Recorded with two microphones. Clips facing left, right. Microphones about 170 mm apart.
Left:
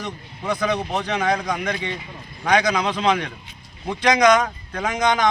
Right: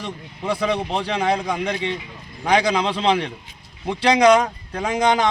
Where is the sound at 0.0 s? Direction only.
30° right (ahead or behind).